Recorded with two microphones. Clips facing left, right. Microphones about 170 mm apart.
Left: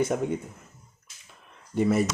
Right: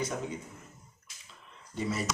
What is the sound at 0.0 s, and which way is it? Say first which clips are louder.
Speech: left 9 dB; 55° left (ahead or behind).